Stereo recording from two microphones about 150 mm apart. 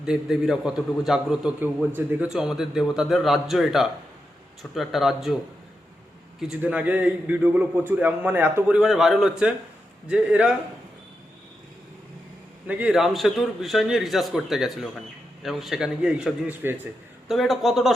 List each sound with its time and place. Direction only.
0.0 s a man's voice: 5° right (ahead or behind)
6.4 s a man's voice: 5° right (ahead or behind)
12.6 s a man's voice: 5° right (ahead or behind)
17.2 s a man's voice: centre (ahead or behind)